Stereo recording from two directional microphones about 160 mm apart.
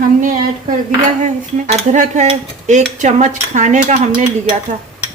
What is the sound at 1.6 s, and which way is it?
Speech, 50° right (ahead or behind).